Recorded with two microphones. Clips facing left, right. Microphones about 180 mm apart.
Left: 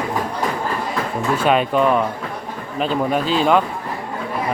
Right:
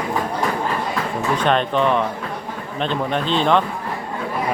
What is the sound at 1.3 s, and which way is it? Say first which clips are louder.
A man's voice: left 2 dB; 5° left (ahead or behind).